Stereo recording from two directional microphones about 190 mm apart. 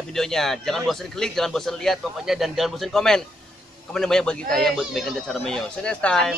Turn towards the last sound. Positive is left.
turn(degrees=5)  # may be behind; listen again after turning